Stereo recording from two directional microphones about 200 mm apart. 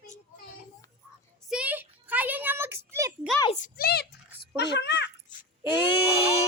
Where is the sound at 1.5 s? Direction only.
5° right (ahead or behind).